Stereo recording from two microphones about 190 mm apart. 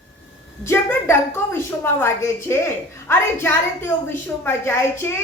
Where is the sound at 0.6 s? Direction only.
15° left (ahead or behind).